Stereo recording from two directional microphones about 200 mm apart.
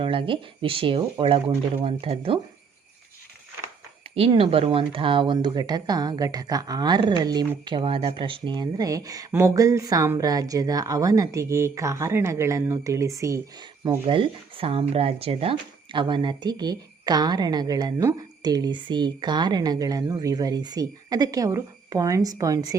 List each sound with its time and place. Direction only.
0.0 s speech: 25° right (ahead or behind)
4.1 s speech: 25° right (ahead or behind)